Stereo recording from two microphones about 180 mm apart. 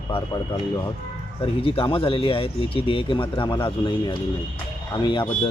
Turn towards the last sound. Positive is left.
turn(degrees=25)  # may be behind; listen again after turning